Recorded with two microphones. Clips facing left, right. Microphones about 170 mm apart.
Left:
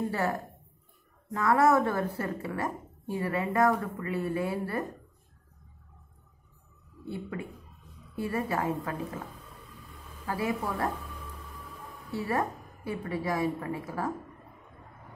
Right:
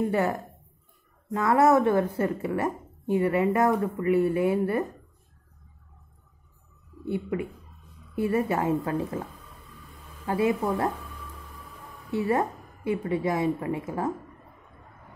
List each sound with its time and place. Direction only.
1.3 s a woman's voice: 20° right (ahead or behind)
7.1 s a woman's voice: 20° right (ahead or behind)
10.2 s a woman's voice: 25° right (ahead or behind)
12.1 s a woman's voice: 20° right (ahead or behind)